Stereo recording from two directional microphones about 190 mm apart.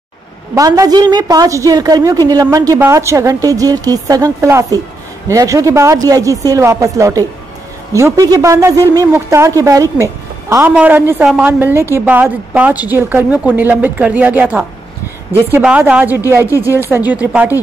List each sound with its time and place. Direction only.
0.6 s a woman's voice: 20° right (ahead or behind)
16.4 s speech: 15° left (ahead or behind)
16.9 s a woman's voice: 10° right (ahead or behind)